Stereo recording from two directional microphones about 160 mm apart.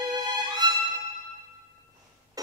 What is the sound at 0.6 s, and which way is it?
Music, 25° right (ahead or behind).